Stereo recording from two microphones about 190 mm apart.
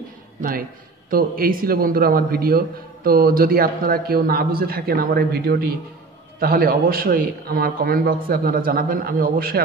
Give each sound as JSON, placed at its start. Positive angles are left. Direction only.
{"t": 0.4, "sound": "a man's voice", "side_deg": -50}